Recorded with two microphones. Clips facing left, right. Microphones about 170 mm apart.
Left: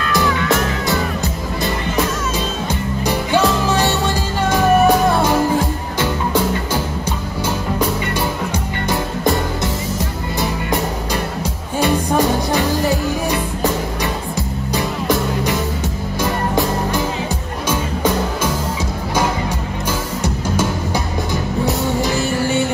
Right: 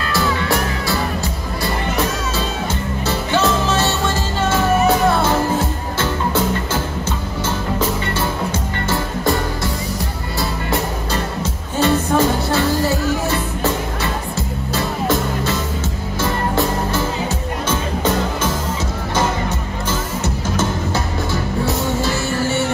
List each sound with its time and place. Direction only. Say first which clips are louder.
3.1 s music: left 2 dB; 15° left (ahead or behind)
10.4 s music: left 1 dB; 15° left (ahead or behind)
14.7 s music: even; 15° left (ahead or behind)
20.5 s music: right 1 dB; 15° left (ahead or behind)